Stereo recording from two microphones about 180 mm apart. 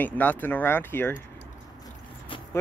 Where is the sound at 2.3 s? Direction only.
30° left (ahead or behind).